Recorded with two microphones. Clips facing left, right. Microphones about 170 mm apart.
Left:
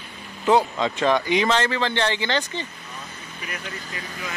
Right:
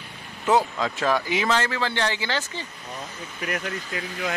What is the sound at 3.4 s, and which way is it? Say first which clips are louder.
Speech: right 6 dB; 70° right (ahead or behind).